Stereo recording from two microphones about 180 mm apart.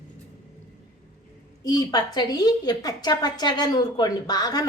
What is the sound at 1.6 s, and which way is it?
A woman's voice, 20° left (ahead or behind).